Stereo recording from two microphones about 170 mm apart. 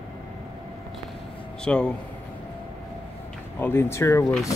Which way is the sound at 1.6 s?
5° left (ahead or behind).